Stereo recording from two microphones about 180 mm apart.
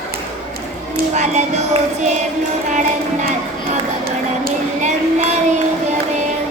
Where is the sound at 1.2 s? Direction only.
40° right (ahead or behind).